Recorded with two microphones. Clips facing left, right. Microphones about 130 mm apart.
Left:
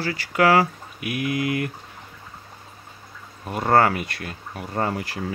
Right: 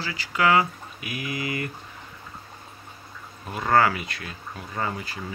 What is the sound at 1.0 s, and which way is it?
Speech, 55° left (ahead or behind).